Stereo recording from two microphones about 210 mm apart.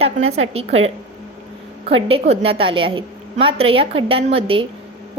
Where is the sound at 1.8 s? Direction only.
25° right (ahead or behind).